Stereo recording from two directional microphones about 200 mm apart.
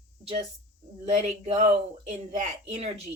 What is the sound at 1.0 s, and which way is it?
Speech, 30° right (ahead or behind).